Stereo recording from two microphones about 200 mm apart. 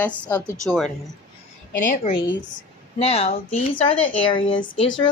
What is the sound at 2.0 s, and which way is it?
Speech, 25° left (ahead or behind).